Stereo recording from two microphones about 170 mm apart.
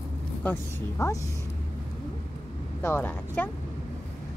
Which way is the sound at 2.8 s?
15° left (ahead or behind).